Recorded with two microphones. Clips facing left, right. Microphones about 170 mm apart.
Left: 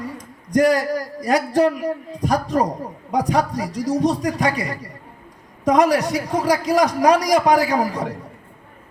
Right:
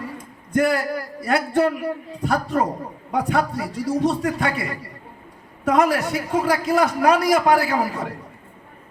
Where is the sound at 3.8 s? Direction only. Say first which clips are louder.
Left 2 dB; 40° left (ahead or behind).